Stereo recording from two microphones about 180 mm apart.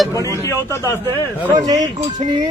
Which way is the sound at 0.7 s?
15° left (ahead or behind).